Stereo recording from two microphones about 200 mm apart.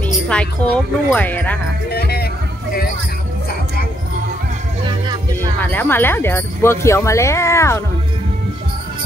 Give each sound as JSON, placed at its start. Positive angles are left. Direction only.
{"t": 0.3, "sound": "speech", "side_deg": 5}
{"t": 1.9, "sound": "music", "side_deg": 50}
{"t": 4.8, "sound": "music", "side_deg": -20}
{"t": 5.6, "sound": "speech", "side_deg": 10}